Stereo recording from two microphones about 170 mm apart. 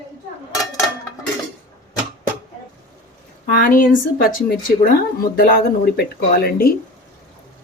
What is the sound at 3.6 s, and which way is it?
Speech, 55° left (ahead or behind).